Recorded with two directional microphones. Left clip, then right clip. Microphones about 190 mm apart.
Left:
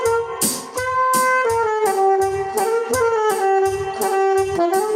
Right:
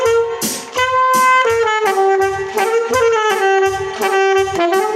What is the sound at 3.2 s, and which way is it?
Saxophone, 25° right (ahead or behind).